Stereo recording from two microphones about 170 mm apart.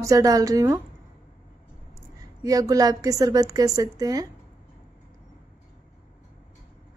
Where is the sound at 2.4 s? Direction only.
20° right (ahead or behind).